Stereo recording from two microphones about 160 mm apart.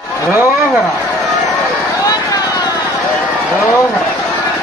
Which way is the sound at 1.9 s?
25° left (ahead or behind).